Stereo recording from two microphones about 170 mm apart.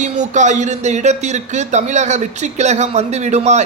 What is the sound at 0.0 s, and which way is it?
Speech, 45° right (ahead or behind).